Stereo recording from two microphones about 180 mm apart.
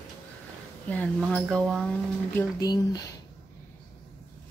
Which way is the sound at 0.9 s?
10° left (ahead or behind).